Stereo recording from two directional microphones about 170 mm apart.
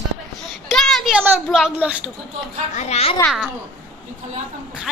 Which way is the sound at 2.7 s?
40° left (ahead or behind).